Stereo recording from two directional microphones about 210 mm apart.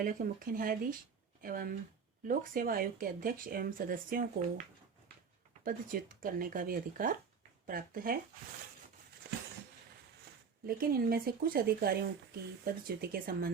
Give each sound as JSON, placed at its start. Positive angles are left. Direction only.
{"t": 0.0, "sound": "speech", "side_deg": -40}
{"t": 5.6, "sound": "speech", "side_deg": -40}
{"t": 10.8, "sound": "speech", "side_deg": -45}